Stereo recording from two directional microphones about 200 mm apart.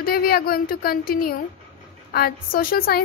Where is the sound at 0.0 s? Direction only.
50° left (ahead or behind).